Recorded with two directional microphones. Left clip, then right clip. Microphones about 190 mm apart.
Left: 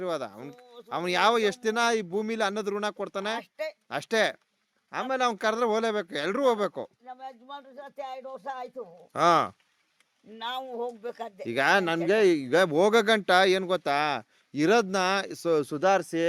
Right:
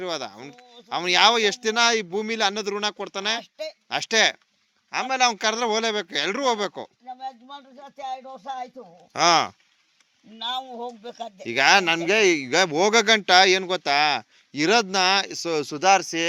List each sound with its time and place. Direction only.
0.0 s speech: 40° left (ahead or behind)
0.3 s speech: 25° left (ahead or behind)
0.9 s speech: 40° left (ahead or behind)
7.1 s a sound: 25° left (ahead or behind)
7.9 s speech: 30° left (ahead or behind)
10.7 s speech: 25° left (ahead or behind)
11.4 s speech: 35° left (ahead or behind)